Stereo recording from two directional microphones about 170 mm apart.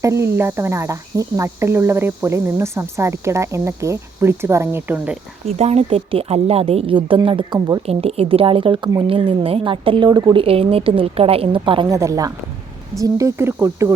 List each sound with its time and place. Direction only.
0.0 s cricket: 15° right (ahead or behind)
5.5 s a woman's voice: 40° right (ahead or behind); by 10.4 s 25° right (ahead or behind)
10.4 s a woman's voice: 35° right (ahead or behind)
11.9 s a woman's voice: 20° right (ahead or behind)
13.0 s cricket: 20° right (ahead or behind)